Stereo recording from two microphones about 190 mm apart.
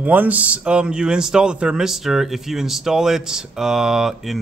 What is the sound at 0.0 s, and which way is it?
Speech, 10° right (ahead or behind).